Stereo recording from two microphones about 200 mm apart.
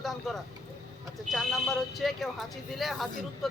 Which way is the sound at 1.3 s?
Centre (ahead or behind).